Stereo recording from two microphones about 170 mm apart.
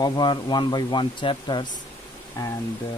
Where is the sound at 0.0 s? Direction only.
25° left (ahead or behind).